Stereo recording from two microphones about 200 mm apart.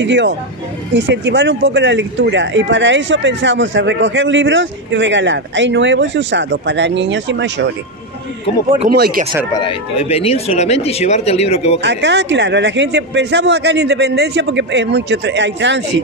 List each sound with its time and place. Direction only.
0.0 s speech: 65° right (ahead or behind)
8.9 s speech: 50° right (ahead or behind)
9.5 s speech: 25° left (ahead or behind)
11.8 s speech: 60° right (ahead or behind)